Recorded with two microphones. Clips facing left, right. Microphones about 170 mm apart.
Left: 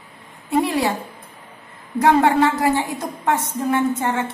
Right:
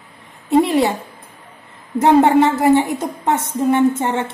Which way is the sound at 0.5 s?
20° right (ahead or behind).